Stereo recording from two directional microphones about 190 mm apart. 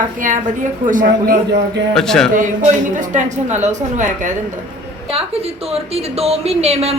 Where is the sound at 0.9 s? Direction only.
45° right (ahead or behind).